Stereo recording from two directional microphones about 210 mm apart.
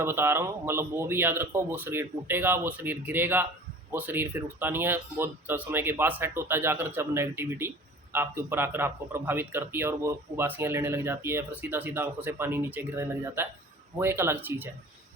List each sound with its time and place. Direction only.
0.0 s a man's voice: 10° right (ahead or behind)